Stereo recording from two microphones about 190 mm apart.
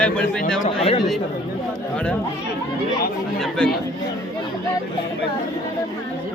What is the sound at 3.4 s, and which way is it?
Speech, 5° left (ahead or behind).